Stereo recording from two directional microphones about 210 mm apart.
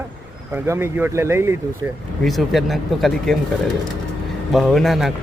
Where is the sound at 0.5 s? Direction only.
10° right (ahead or behind).